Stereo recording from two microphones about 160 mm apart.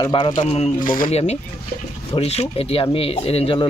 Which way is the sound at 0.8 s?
60° left (ahead or behind).